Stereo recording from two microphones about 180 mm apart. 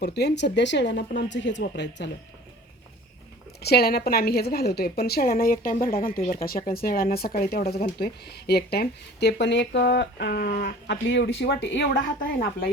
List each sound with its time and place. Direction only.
0.0 s speech: 65° left (ahead or behind)
3.6 s a woman's voice: 65° left (ahead or behind)
11.1 s speech: 80° left
11.9 s a woman's voice: 55° left (ahead or behind)